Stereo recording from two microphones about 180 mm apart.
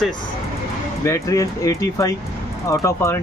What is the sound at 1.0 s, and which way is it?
Speech, 15° left (ahead or behind).